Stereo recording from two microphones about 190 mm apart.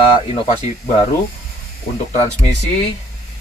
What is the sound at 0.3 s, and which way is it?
Speech, 30° left (ahead or behind).